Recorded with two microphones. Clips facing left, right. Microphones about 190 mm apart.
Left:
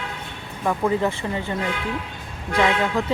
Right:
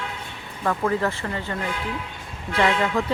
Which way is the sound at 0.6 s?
10° left (ahead or behind).